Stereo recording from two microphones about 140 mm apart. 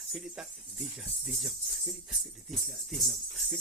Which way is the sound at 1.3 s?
Centre (ahead or behind).